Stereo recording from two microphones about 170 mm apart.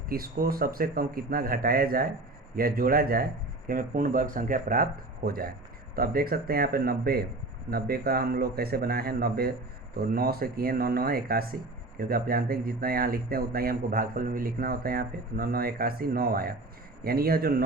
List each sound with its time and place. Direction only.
0.1 s speech: 60° right (ahead or behind)